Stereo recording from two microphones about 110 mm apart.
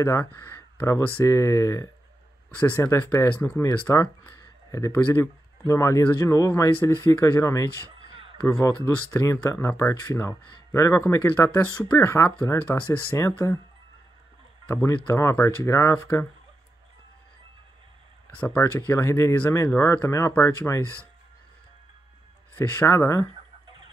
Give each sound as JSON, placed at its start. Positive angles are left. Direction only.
{"t": 0.0, "sound": "speech", "side_deg": 20}
{"t": 14.7, "sound": "speech", "side_deg": 20}
{"t": 18.4, "sound": "speech", "side_deg": 15}
{"t": 22.6, "sound": "speech", "side_deg": 20}